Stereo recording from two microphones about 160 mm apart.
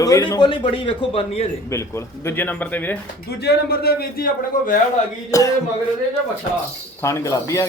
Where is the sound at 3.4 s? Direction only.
80° left; by 4.7 s 65° left (ahead or behind).